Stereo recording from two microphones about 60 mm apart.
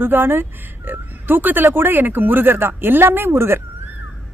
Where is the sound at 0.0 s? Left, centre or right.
Right.